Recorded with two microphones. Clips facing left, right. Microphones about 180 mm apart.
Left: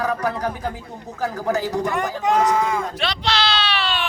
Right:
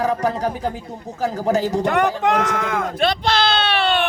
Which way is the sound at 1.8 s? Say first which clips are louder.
Right 4 dB; 70° right (ahead or behind).